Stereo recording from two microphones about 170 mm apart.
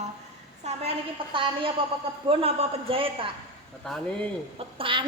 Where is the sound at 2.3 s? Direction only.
35° right (ahead or behind).